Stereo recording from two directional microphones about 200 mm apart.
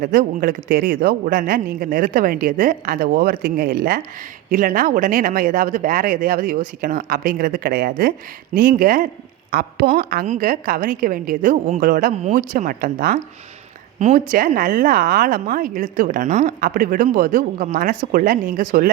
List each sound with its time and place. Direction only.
0.0 s speech: 45° right (ahead or behind)